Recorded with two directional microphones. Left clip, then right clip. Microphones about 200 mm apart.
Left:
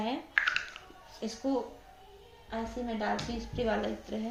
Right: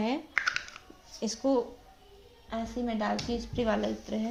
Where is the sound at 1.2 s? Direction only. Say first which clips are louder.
Right 5 dB; 50° right (ahead or behind).